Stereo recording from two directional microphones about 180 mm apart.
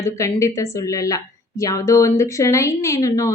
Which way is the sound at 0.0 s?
15° left (ahead or behind).